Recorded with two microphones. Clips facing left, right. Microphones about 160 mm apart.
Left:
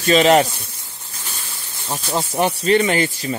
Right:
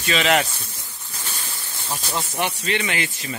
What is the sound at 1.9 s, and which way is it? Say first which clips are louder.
Speech: left 5 dB; 35° left (ahead or behind).